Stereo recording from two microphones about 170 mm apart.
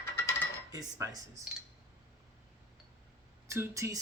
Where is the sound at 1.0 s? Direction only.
20° right (ahead or behind).